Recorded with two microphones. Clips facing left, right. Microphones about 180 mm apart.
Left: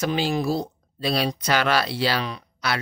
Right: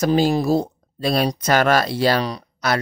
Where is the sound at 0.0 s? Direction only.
40° right (ahead or behind).